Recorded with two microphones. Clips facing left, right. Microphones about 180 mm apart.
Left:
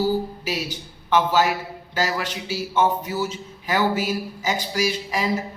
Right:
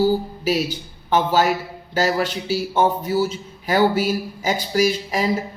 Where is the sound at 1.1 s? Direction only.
30° right (ahead or behind).